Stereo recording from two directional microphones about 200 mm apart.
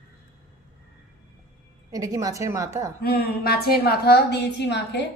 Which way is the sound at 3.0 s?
50° left (ahead or behind).